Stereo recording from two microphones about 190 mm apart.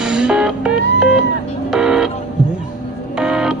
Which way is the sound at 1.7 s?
5° right (ahead or behind).